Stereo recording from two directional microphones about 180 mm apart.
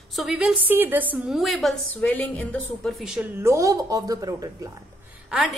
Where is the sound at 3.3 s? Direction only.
15° right (ahead or behind).